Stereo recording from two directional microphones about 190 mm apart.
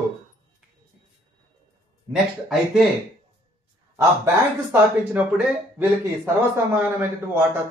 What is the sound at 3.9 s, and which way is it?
Speech, 15° right (ahead or behind).